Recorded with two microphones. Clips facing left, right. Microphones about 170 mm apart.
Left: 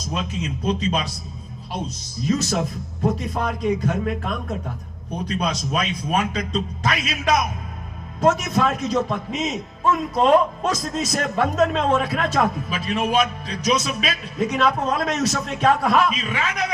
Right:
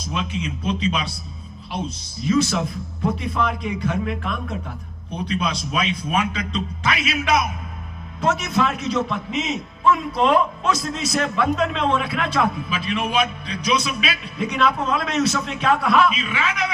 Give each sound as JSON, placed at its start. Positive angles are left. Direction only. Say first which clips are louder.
{"t": 0.1, "sound": "a man's voice", "louder": "even", "side_deg": 40}
{"t": 2.2, "sound": "a man's voice", "louder": "right 2 dB", "side_deg": 40}
{"t": 8.2, "sound": "a man's voice", "louder": "left 2 dB", "side_deg": 45}